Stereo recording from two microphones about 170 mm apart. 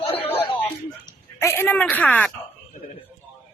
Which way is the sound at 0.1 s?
35° left (ahead or behind).